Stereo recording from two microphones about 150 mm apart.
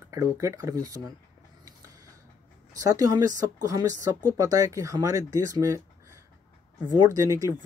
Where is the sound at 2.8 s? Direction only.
25° right (ahead or behind).